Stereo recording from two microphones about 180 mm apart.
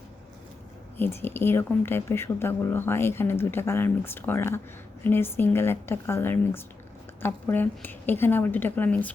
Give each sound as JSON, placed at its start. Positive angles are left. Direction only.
{"t": 0.9, "sound": "a woman's voice", "side_deg": 10}